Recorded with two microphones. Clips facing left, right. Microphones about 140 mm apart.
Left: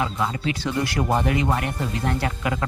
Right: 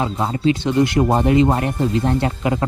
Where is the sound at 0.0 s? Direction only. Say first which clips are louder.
Right 6 dB; 30° right (ahead or behind).